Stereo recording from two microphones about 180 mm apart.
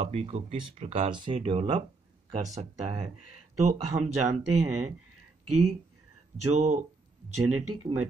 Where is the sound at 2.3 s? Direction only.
40° right (ahead or behind).